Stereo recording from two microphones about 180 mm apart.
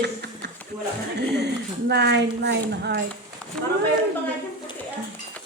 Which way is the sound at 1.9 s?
70° right (ahead or behind).